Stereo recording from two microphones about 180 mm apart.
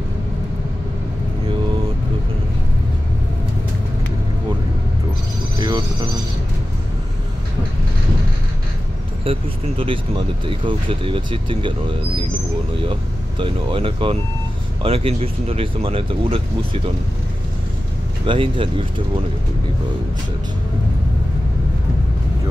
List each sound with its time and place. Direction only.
5.6 s a sound: 20° right (ahead or behind)
9.2 s speech: 30° right (ahead or behind)
13.4 s speech: 30° right (ahead or behind)
18.2 s speech: 30° right (ahead or behind)